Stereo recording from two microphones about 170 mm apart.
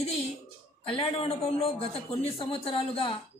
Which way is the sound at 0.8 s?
35° left (ahead or behind).